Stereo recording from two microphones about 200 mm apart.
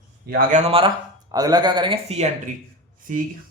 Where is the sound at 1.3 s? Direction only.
20° right (ahead or behind).